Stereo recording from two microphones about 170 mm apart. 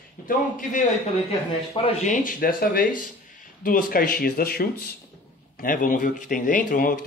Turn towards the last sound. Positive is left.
turn(degrees=55)  # may be behind; listen again after turning